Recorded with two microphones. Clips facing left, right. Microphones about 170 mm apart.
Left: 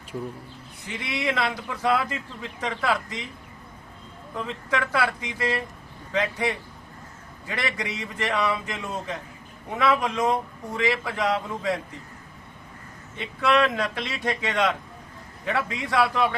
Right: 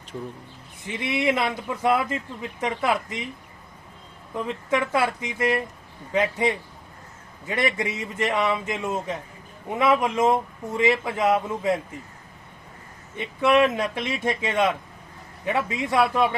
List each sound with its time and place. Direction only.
1.3 s speech: 20° right (ahead or behind)
4.4 s speech: 20° right (ahead or behind)
13.1 s speech: 20° right (ahead or behind)